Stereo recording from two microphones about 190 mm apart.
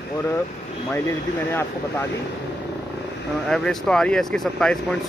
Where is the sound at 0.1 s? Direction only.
15° left (ahead or behind).